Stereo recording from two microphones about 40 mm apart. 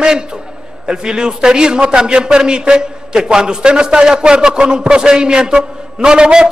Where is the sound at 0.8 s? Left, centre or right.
Right.